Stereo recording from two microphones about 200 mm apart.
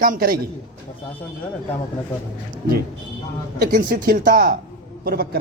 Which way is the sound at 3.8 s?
50° right (ahead or behind).